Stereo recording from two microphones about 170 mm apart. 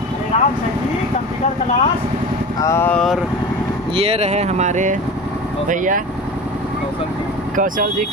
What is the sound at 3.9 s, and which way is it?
Speech, 35° right (ahead or behind).